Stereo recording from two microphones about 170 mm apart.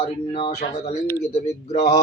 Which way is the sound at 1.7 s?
75° left (ahead or behind).